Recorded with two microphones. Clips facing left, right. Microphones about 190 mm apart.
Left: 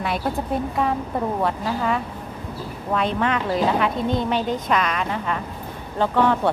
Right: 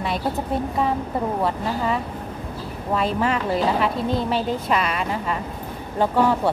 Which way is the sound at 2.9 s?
5° right (ahead or behind).